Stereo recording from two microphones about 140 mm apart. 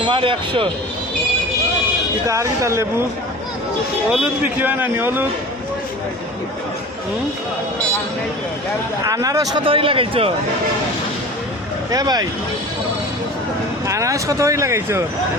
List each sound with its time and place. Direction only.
0.0 s speech: 35° right (ahead or behind)
2.2 s speech: 20° right (ahead or behind)
4.1 s a man's voice: 10° right (ahead or behind)
9.0 s speech: 25° right (ahead or behind)
9.6 s speech: 40° right (ahead or behind)
11.9 s speech: 25° right (ahead or behind)
13.8 s speech: 20° right (ahead or behind)